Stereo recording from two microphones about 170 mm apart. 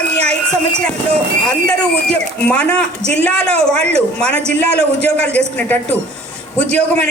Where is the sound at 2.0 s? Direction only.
5° left (ahead or behind).